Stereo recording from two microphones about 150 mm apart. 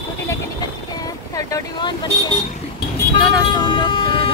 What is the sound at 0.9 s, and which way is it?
Vehicle, 25° left (ahead or behind).